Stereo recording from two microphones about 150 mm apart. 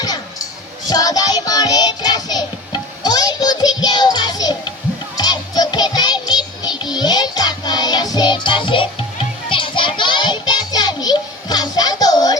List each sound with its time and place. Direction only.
0.9 s music: 25° left (ahead or behind)